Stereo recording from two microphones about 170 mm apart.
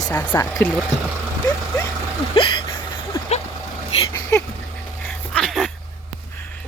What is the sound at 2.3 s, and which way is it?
Vehicle, 25° left (ahead or behind).